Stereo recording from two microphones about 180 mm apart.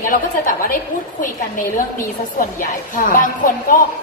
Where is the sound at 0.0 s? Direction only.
50° left (ahead or behind).